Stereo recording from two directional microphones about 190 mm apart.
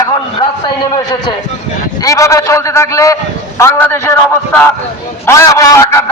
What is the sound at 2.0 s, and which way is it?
A man's voice, 15° left (ahead or behind).